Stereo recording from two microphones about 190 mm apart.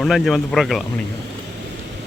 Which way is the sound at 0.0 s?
Centre (ahead or behind).